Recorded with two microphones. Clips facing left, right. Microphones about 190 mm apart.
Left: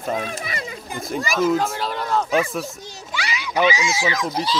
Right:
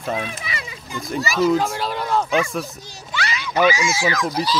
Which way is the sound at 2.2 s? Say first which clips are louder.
Even; 35° left (ahead or behind).